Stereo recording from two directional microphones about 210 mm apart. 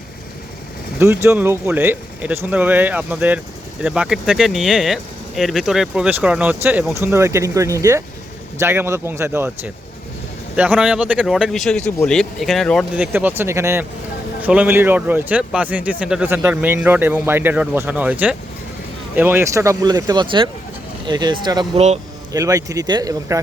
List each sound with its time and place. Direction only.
0.9 s speech: 10° right (ahead or behind)
10.5 s speech: 5° right (ahead or behind)
13.1 s speech: 10° right (ahead or behind)